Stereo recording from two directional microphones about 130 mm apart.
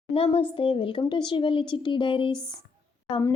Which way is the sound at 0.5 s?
40° left (ahead or behind).